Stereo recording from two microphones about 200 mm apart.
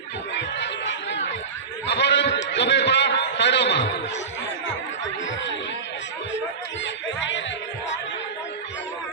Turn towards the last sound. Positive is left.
turn(degrees=65)  # may be behind; listen again after turning